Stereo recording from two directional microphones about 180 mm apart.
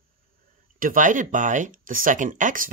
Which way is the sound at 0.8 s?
45° right (ahead or behind).